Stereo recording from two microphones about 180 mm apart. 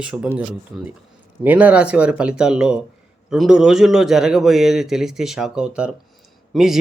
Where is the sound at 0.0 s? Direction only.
5° right (ahead or behind).